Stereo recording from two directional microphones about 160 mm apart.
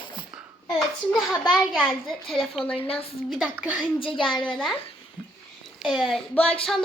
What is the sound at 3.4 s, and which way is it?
Speech, 5° right (ahead or behind).